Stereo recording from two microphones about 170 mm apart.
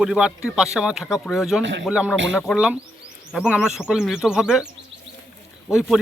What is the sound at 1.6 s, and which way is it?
Speech, 90° right.